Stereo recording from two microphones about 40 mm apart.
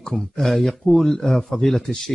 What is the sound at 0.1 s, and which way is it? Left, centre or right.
Speech, centre.